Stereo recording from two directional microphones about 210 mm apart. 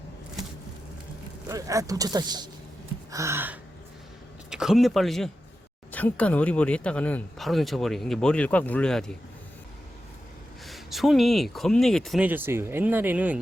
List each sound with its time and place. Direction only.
1.5 s speech: 15° right (ahead or behind); by 9.1 s 5° left (ahead or behind)
10.7 s speech: centre (ahead or behind)